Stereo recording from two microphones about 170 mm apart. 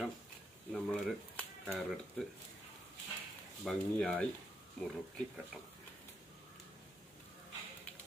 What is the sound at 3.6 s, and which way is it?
Speech, centre (ahead or behind).